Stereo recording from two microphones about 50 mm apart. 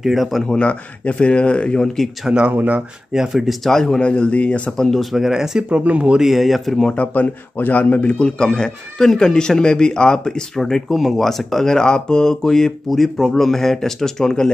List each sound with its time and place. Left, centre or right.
0.0 s speech: centre
0.5 s speech: left
2.5 s speech: right
3.1 s speech: centre
3.7 s a man's voice: centre
4.0 s speech: left
5.1 s speech: centre
5.7 s speech: right
6.1 s speech: centre
6.9 s a man's voice: left; by 14.5 s centre